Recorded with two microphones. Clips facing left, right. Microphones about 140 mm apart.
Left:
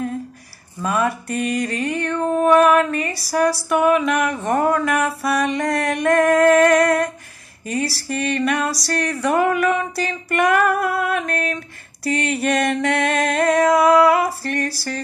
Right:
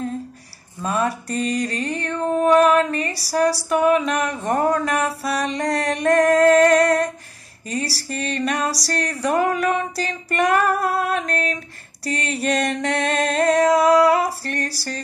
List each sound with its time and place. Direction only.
0.8 s mantra: 30° right (ahead or behind)